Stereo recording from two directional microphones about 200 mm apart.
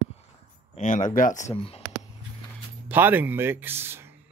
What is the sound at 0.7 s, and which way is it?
Speech, 40° left (ahead or behind).